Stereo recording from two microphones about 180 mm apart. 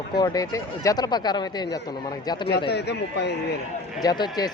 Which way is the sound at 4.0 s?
25° left (ahead or behind).